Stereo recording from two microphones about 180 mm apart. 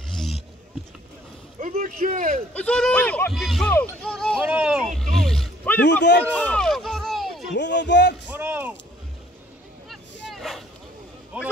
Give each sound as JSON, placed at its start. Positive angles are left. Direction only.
{"t": 1.6, "sound": "speech", "side_deg": -45}
{"t": 2.5, "sound": "speech", "side_deg": 5}
{"t": 4.5, "sound": "speech", "side_deg": -5}
{"t": 6.3, "sound": "a sound", "side_deg": 5}
{"t": 7.5, "sound": "speech", "side_deg": 75}
{"t": 8.4, "sound": "a sound", "side_deg": -10}
{"t": 9.8, "sound": "vehicle", "side_deg": 0}
{"t": 11.3, "sound": "speech", "side_deg": -10}